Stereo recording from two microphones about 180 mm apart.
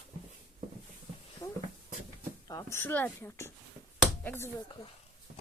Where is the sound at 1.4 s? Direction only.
15° left (ahead or behind).